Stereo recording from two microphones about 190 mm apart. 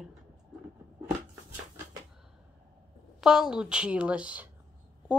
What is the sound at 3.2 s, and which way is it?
A woman's voice, 5° right (ahead or behind).